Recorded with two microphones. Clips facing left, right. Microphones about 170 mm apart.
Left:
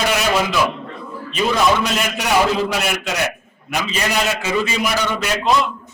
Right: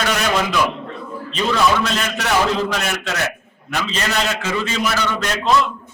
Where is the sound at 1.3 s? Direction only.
10° left (ahead or behind).